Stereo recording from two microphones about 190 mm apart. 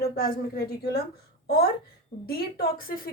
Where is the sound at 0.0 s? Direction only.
50° left (ahead or behind).